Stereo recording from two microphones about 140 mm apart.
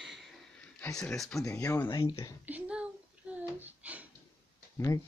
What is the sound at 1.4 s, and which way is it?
Speech, 20° left (ahead or behind).